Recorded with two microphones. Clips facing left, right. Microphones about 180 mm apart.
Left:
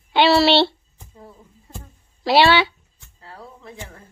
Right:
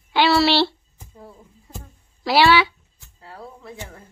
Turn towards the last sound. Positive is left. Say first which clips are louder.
# right 1 dB
turn(degrees=-5)  # may be behind; listen again after turning